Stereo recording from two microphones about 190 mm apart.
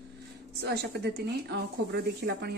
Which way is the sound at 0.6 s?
60° right (ahead or behind).